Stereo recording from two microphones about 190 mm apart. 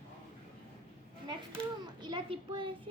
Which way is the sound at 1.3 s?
25° right (ahead or behind).